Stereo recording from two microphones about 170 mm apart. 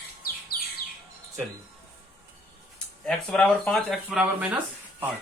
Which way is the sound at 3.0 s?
5° left (ahead or behind).